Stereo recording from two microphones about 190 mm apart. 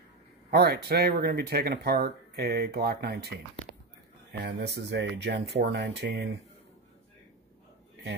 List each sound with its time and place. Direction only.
0.5 s speech: 55° right (ahead or behind)